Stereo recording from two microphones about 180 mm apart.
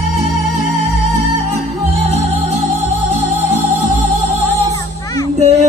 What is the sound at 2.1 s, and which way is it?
Music, 35° right (ahead or behind).